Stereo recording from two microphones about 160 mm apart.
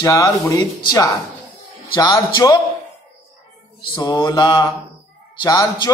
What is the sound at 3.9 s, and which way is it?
Speech, 25° left (ahead or behind).